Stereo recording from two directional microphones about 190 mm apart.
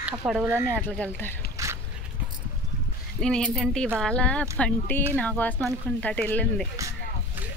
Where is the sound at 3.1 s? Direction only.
5° left (ahead or behind).